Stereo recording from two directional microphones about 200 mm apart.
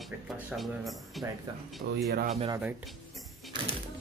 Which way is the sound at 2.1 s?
50° right (ahead or behind).